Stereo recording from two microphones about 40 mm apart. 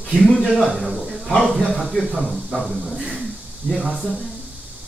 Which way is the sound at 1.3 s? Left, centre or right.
Centre.